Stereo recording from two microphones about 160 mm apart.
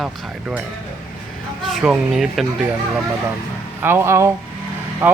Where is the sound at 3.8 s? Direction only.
15° right (ahead or behind).